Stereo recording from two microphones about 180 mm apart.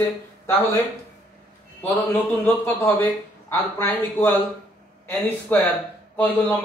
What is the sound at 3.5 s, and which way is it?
Speech, 10° left (ahead or behind).